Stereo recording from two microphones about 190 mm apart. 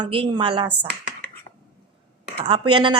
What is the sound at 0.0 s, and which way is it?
Speech, 25° right (ahead or behind).